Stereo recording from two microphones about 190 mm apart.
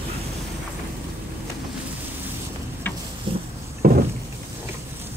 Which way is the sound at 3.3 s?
25° right (ahead or behind).